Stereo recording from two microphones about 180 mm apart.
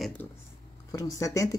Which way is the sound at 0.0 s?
5° left (ahead or behind).